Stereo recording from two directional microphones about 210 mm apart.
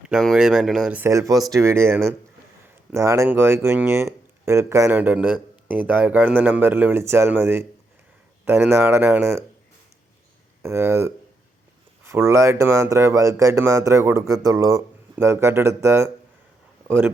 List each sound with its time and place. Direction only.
0.1 s speech: centre (ahead or behind)
10.6 s speech: 10° right (ahead or behind)